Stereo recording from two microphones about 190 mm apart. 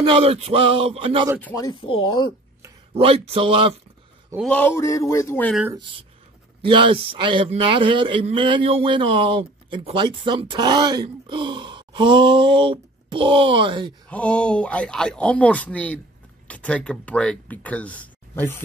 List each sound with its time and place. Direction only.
0.0 s a man's voice: 30° right (ahead or behind)
1.4 s speech: 15° left (ahead or behind)
3.0 s a man's voice: 30° right (ahead or behind)
4.4 s speech: 10° left (ahead or behind)
5.8 s a man's voice: 25° right (ahead or behind)
14.0 s speech: 5° left (ahead or behind)